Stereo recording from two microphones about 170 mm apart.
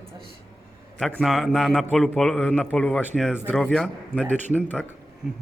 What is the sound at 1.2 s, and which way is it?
A man's voice, centre (ahead or behind).